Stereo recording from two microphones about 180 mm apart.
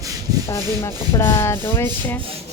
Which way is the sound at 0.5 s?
15° left (ahead or behind).